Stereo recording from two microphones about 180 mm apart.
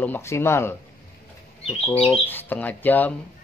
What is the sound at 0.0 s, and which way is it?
Speech, 15° left (ahead or behind).